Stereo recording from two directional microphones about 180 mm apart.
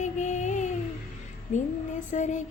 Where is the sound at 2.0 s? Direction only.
45° left (ahead or behind).